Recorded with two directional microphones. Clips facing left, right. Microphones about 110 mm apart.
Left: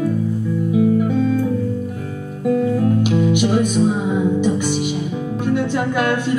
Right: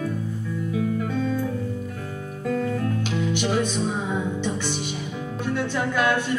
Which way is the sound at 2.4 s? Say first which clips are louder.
Left 8 dB; 20° left (ahead or behind).